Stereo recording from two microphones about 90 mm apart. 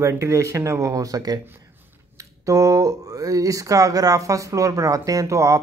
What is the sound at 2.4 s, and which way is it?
Speech, 40° right (ahead or behind).